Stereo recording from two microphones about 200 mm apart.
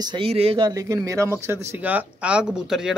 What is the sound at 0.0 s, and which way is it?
Speech, 25° right (ahead or behind).